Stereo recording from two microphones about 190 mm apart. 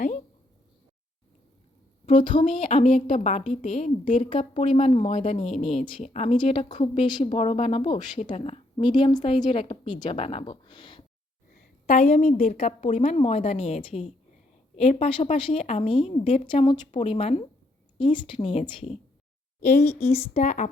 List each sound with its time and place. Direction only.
2.1 s a woman's voice: 25° left (ahead or behind)
4.3 s a woman's voice: 30° left (ahead or behind)
11.9 s a woman's voice: 35° left (ahead or behind)
19.8 s speech: 10° left (ahead or behind)
20.1 s a woman's voice: 35° left (ahead or behind)